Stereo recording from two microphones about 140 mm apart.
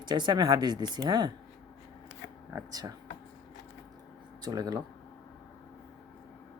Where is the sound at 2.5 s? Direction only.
25° right (ahead or behind).